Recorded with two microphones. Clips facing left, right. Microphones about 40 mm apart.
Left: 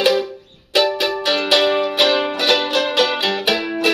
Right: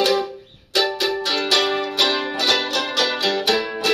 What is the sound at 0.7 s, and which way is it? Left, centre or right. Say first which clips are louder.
Music: left 3 dB; left.